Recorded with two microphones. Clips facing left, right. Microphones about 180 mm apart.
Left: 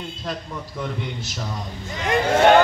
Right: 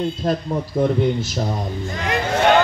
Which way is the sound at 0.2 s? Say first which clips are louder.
Right 9 dB; 45° right (ahead or behind).